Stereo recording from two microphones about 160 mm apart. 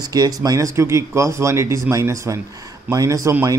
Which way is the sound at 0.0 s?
25° right (ahead or behind).